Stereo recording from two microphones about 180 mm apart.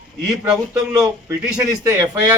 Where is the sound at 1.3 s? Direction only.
5° right (ahead or behind).